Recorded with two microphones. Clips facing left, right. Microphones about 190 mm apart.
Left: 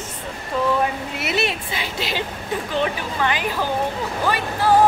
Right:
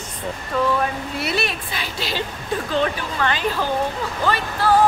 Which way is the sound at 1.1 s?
20° left (ahead or behind).